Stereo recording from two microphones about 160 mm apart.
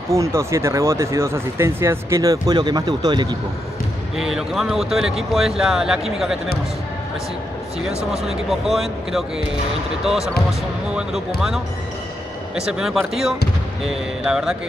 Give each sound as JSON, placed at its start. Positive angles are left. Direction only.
{"t": 0.1, "sound": "speech", "side_deg": -15}
{"t": 4.2, "sound": "speech", "side_deg": -5}
{"t": 8.3, "sound": "speech", "side_deg": 0}